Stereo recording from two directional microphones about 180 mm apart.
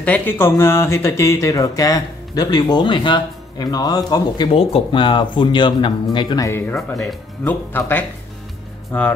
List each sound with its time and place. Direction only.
0.0 s speech: 10° left (ahead or behind)
6.9 s speech: centre (ahead or behind)